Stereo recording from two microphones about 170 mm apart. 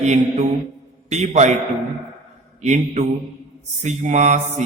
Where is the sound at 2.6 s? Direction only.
45° right (ahead or behind).